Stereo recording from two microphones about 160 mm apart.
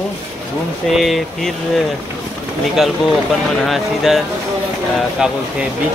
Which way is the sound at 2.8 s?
Centre (ahead or behind).